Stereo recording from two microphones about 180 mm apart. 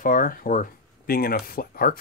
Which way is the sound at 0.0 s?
50° left (ahead or behind).